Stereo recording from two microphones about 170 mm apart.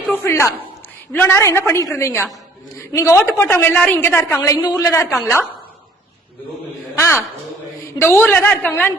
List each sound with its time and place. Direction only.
0.1 s a woman's voice: 10° left (ahead or behind)
6.9 s a woman's voice: 15° left (ahead or behind)